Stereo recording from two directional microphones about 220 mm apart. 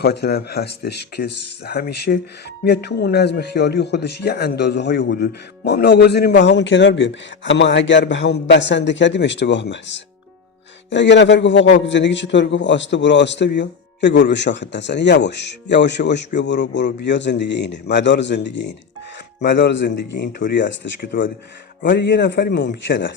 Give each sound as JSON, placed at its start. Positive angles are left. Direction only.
{"t": 0.0, "sound": "a man's voice", "side_deg": 45}